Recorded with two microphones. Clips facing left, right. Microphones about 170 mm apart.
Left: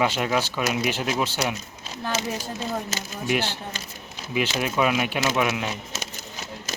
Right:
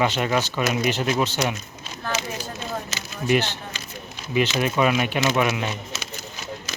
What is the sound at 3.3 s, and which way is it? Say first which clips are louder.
Speech: right 4 dB; 10° left (ahead or behind).